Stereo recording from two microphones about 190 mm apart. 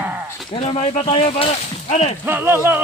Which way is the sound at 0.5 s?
30° left (ahead or behind).